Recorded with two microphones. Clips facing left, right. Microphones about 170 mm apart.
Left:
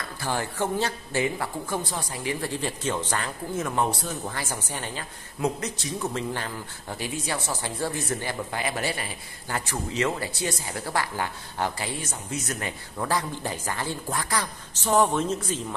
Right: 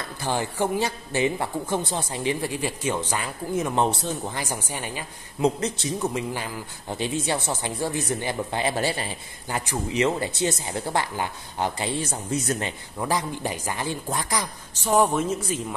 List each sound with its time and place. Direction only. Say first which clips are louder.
0.2 s speech: right 3 dB; 20° right (ahead or behind)
5.4 s speech: right 5 dB; 25° right (ahead or behind)
6.1 s speech: right 1 dB; 10° right (ahead or behind)
7.0 s speech: right 5 dB; 25° right (ahead or behind)
9.5 s speech: right 2 dB; 20° right (ahead or behind)
12.0 s speech: right 6 dB; 30° right (ahead or behind)
13.0 s speech: right 2 dB; 15° right (ahead or behind)